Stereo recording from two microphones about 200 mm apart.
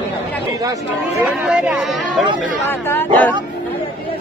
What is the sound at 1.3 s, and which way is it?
Speech, 5° right (ahead or behind).